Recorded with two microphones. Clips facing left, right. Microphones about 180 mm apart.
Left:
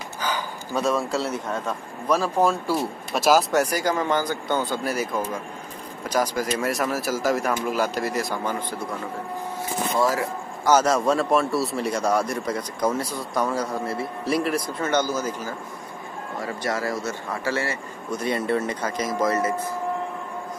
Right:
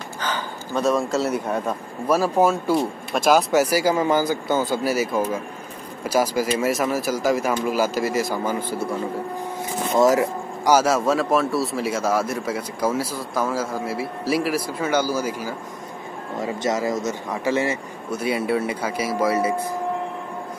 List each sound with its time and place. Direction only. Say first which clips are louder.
0.2 s a sound: even; 10° left (ahead or behind)
0.8 s speech: right 4 dB; centre (ahead or behind)
9.9 s speech: right 7 dB; 20° right (ahead or behind)
16.3 s speech: right 4 dB; 20° right (ahead or behind)
18.1 s speech: right 2 dB; 5° right (ahead or behind)